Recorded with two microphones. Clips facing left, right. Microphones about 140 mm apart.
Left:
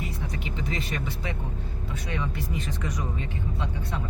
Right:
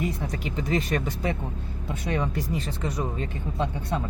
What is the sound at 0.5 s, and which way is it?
Speech, 40° right (ahead or behind).